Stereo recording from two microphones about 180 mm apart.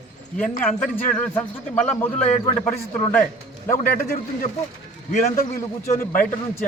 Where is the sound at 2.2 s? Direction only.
35° left (ahead or behind).